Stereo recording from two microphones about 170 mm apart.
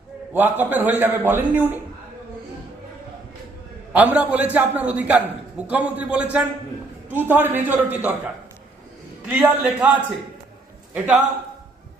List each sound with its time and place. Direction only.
0.3 s a man's voice: 10° right (ahead or behind)
3.9 s a man's voice: 10° right (ahead or behind)